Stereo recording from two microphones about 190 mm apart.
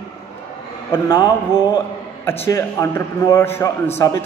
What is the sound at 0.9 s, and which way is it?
Speech, 15° left (ahead or behind).